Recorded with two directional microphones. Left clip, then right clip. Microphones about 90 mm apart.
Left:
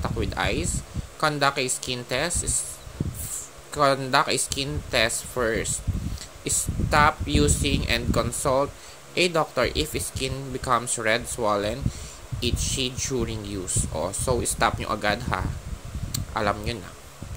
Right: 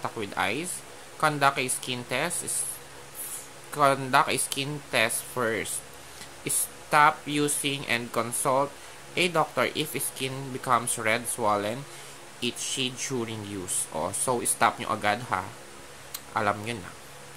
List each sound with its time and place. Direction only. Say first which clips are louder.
0.0 s speech: left 2 dB; 35° left (ahead or behind)
3.7 s speech: left 1 dB; 30° left (ahead or behind)
14.6 s speech: right 1 dB; 35° left (ahead or behind)
16.1 s a sound: left 1 dB; 35° left (ahead or behind)